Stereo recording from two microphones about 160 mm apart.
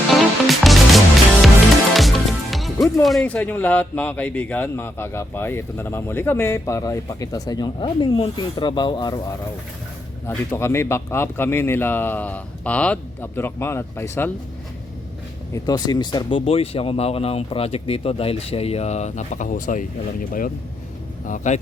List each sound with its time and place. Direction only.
0.4 s music: centre (ahead or behind)
3.0 s speech: centre (ahead or behind); by 9.1 s 30° left (ahead or behind)
10.2 s speech: 15° left (ahead or behind)
15.5 s speech: 25° left (ahead or behind); by 19.8 s 55° left (ahead or behind)
21.2 s speech: 50° left (ahead or behind)